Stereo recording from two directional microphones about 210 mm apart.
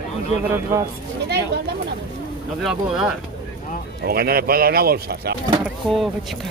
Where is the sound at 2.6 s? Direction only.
5° right (ahead or behind).